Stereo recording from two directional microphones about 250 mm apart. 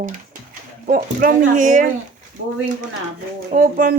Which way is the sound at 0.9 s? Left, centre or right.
Right.